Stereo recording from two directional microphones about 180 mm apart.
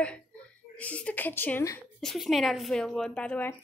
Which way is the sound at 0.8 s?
10° left (ahead or behind).